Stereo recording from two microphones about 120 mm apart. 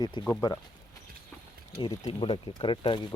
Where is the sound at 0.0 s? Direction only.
35° left (ahead or behind).